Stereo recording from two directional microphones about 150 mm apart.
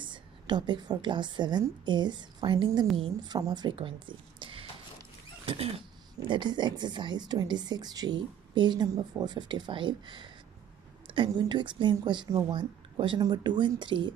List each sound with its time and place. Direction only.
0.0 s a woman's voice: 30° right (ahead or behind)
5.4 s creak: 35° right (ahead or behind)
6.1 s a woman's voice: 30° right (ahead or behind)